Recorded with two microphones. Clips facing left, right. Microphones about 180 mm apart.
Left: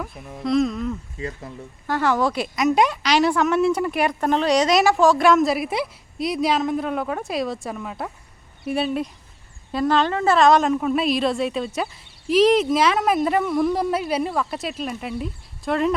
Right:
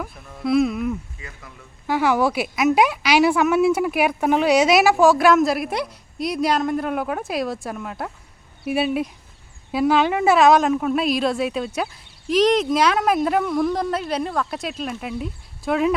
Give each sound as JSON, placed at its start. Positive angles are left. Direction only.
{"t": 0.4, "sound": "speech", "side_deg": -5}
{"t": 1.2, "sound": "speech", "side_deg": 35}
{"t": 1.9, "sound": "a woman's voice", "side_deg": -10}